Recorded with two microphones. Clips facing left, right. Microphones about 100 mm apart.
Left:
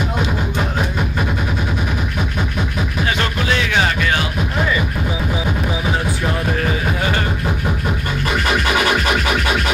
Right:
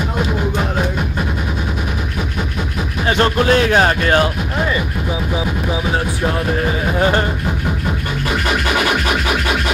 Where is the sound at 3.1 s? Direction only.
40° right (ahead or behind).